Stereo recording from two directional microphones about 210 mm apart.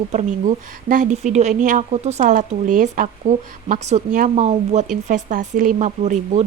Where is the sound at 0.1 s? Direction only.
35° right (ahead or behind).